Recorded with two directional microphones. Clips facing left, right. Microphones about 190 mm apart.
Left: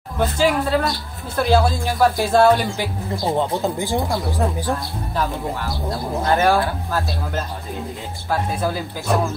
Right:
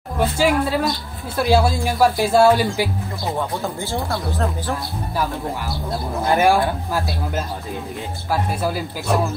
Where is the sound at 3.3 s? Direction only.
25° left (ahead or behind).